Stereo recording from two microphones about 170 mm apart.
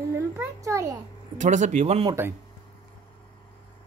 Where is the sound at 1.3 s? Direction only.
45° right (ahead or behind).